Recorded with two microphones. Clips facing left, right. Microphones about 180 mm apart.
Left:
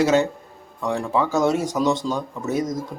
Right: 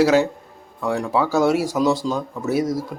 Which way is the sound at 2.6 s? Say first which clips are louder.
Right 3 dB; 20° left (ahead or behind).